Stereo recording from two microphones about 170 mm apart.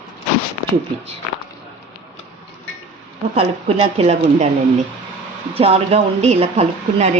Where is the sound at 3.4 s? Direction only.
35° right (ahead or behind).